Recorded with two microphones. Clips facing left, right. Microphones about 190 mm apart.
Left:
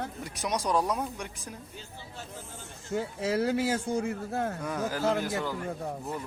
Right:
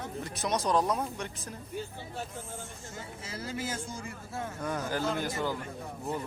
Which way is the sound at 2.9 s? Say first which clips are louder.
Left 16 dB; 65° left (ahead or behind).